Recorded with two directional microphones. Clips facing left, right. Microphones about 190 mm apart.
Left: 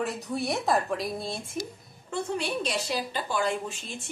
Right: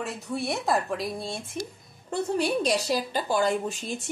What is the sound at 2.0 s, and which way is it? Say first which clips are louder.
A woman's voice: right 4 dB; 40° right (ahead or behind).